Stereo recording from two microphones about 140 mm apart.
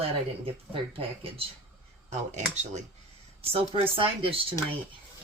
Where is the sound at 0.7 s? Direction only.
40° right (ahead or behind).